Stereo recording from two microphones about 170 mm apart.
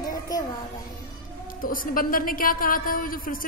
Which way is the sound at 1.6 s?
55° left (ahead or behind).